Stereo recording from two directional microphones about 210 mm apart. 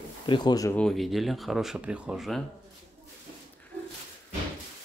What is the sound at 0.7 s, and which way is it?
Speech, centre (ahead or behind).